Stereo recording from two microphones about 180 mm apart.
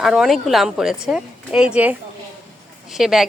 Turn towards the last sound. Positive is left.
turn(degrees=0)  # may be behind; listen again after turning